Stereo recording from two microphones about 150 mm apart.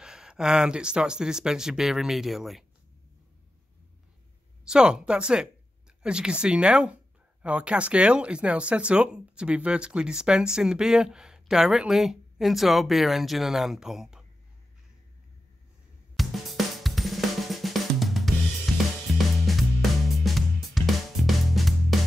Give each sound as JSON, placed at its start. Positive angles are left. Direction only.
{"t": 0.0, "sound": "speech", "side_deg": -5}
{"t": 4.6, "sound": "speech", "side_deg": -5}
{"t": 16.2, "sound": "drum kit", "side_deg": 0}
{"t": 19.1, "sound": "music", "side_deg": 0}